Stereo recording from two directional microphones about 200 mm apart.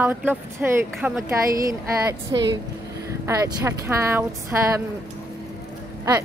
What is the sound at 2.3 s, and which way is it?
Speech, 65° right (ahead or behind).